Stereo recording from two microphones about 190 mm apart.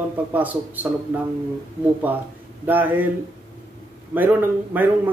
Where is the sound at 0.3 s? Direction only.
10° right (ahead or behind).